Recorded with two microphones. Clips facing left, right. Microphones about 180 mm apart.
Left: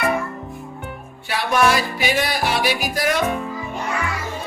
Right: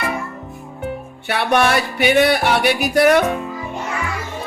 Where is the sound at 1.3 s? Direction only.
65° right (ahead or behind).